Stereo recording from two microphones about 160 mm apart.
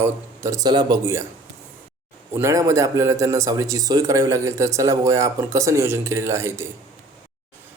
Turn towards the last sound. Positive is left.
turn(degrees=-15)  # may be behind; listen again after turning